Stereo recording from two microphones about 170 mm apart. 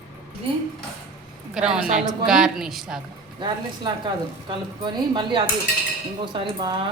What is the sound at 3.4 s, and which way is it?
Speech, 25° right (ahead or behind).